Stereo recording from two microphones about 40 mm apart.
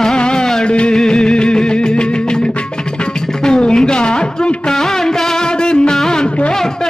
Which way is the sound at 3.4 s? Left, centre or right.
Centre.